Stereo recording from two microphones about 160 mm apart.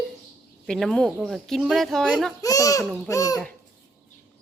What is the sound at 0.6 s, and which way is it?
Speech, 5° left (ahead or behind).